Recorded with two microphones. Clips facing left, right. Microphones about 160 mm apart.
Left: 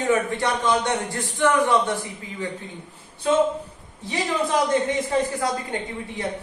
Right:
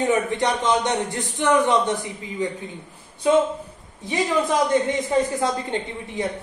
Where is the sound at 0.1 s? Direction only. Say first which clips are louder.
Right 1 dB; 20° right (ahead or behind).